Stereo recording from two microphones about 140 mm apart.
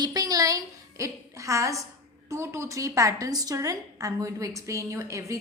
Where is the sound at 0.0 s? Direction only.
25° right (ahead or behind).